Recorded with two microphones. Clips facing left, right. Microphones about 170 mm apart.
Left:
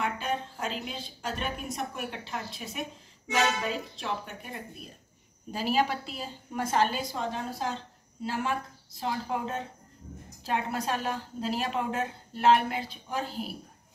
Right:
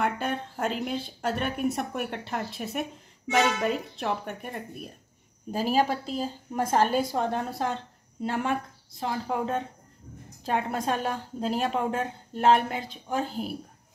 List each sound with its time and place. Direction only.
0.0 s a woman's voice: 55° right (ahead or behind)
5.5 s a woman's voice: 45° right (ahead or behind)
10.4 s a woman's voice: 50° right (ahead or behind)